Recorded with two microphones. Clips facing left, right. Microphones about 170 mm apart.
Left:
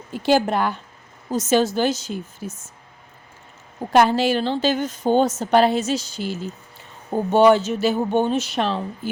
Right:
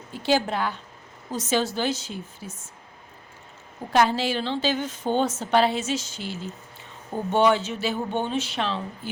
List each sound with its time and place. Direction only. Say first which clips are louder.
0.3 s a woman's voice: left 5 dB; 55° left (ahead or behind)
3.9 s a woman's voice: left 5 dB; 50° left (ahead or behind)